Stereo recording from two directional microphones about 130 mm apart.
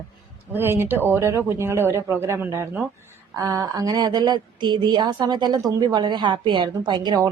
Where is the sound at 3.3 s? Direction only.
25° right (ahead or behind).